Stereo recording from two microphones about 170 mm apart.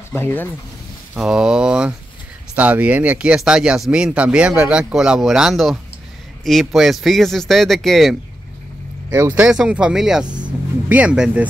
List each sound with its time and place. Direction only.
0.1 s speech: 10° left (ahead or behind)
1.1 s speech: 5° right (ahead or behind)
9.1 s speech: 10° right (ahead or behind)
10.2 s music: 25° right (ahead or behind)
10.9 s speech: 5° right (ahead or behind)